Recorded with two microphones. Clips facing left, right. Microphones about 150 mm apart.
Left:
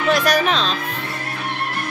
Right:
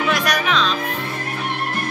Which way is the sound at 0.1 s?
30° left (ahead or behind).